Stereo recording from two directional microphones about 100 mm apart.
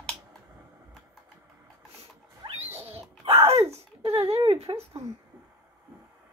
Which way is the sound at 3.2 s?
75° right (ahead or behind).